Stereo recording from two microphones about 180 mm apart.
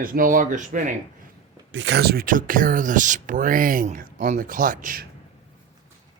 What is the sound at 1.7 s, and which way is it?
Speech, 80° right.